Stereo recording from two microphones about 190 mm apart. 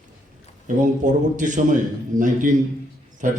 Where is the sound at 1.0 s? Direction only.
40° right (ahead or behind).